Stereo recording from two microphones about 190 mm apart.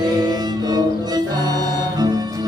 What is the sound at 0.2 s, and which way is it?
Music, 20° right (ahead or behind).